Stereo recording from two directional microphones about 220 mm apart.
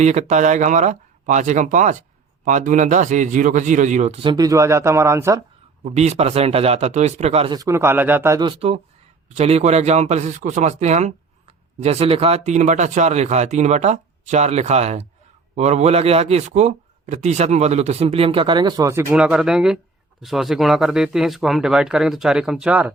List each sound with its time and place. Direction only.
0.0 s speech: 30° right (ahead or behind); by 5.4 s 15° right (ahead or behind)
5.8 s a man's voice: 30° right (ahead or behind); by 22.9 s 5° right (ahead or behind)